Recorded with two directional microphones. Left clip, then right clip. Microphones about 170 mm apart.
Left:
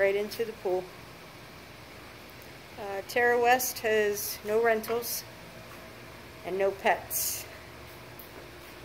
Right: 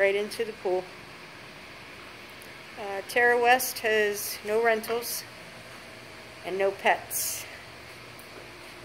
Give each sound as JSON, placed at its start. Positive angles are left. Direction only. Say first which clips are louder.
{"t": 0.0, "sound": "speech", "louder": "right 2 dB", "side_deg": -15}
{"t": 2.8, "sound": "a woman's voice", "louder": "right 3 dB", "side_deg": -10}
{"t": 6.4, "sound": "a woman's voice", "louder": "right 2 dB", "side_deg": 0}